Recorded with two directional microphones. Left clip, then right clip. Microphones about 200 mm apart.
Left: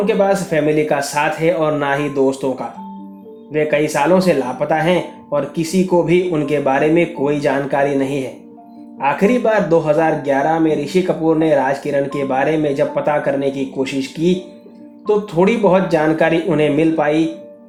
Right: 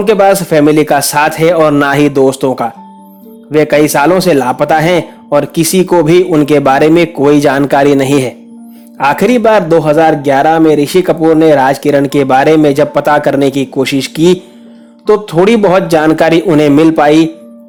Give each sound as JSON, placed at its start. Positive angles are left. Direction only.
{"t": 0.0, "sound": "a man's voice", "side_deg": -50}